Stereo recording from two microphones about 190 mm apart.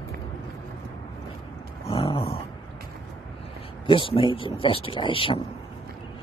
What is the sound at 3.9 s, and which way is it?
Speech, 25° left (ahead or behind).